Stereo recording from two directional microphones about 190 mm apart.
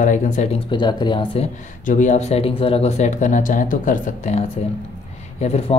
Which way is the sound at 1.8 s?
40° left (ahead or behind).